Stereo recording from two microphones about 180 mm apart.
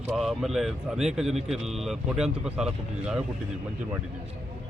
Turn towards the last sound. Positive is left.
turn(degrees=-5)  # may be behind; listen again after turning